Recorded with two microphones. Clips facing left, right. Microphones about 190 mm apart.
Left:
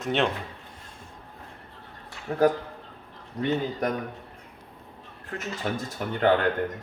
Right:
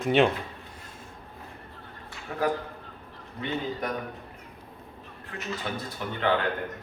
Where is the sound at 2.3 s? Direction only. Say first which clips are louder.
Left 6 dB; 35° left (ahead or behind).